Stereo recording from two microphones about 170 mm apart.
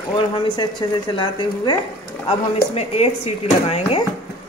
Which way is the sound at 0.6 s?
30° left (ahead or behind).